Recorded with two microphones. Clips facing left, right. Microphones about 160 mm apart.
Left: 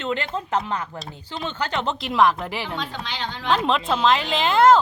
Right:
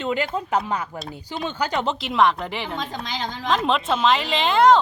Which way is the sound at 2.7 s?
40° right (ahead or behind).